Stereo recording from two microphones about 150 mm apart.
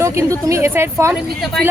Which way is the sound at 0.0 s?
20° right (ahead or behind).